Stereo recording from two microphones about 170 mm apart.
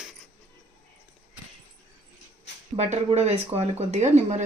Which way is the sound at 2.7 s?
40° right (ahead or behind).